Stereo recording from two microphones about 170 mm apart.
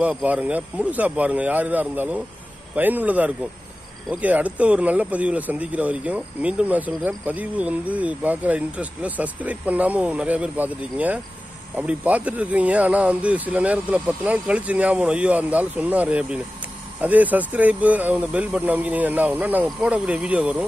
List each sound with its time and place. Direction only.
0.0 s speech: 10° right (ahead or behind)